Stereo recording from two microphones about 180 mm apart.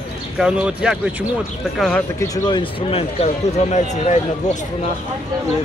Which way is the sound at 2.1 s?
20° left (ahead or behind).